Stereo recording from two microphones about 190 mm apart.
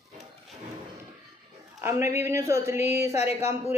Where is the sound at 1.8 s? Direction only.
15° right (ahead or behind).